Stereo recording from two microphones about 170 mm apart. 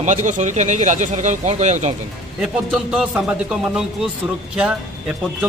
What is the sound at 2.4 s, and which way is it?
Speech, 5° right (ahead or behind).